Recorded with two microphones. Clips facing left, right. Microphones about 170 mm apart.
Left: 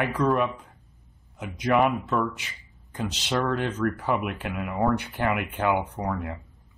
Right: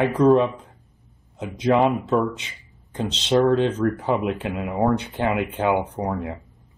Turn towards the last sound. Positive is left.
turn(degrees=-20)  # may be behind; listen again after turning